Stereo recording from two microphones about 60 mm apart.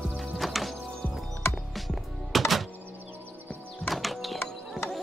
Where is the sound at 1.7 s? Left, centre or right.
Centre.